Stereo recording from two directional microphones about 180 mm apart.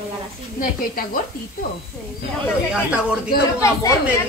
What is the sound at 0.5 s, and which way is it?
Speech, 50° left (ahead or behind).